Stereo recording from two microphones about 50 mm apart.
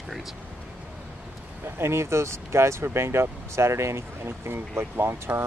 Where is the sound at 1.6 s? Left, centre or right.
Right.